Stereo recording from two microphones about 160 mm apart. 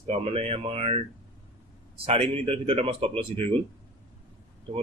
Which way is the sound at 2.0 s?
40° right (ahead or behind).